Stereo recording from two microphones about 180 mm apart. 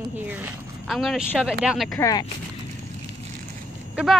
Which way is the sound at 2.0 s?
20° left (ahead or behind).